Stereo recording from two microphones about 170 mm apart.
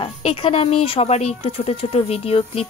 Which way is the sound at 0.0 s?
35° left (ahead or behind).